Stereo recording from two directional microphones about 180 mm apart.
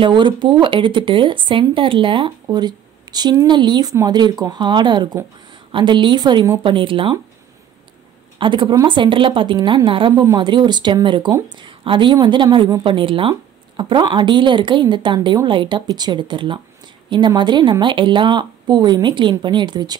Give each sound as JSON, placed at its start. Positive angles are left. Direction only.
{"t": 0.0, "sound": "a woman's voice", "side_deg": -25}
{"t": 8.4, "sound": "a woman's voice", "side_deg": -25}